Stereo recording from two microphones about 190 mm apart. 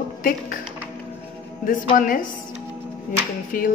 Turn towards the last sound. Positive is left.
turn(degrees=45)  # may be behind; listen again after turning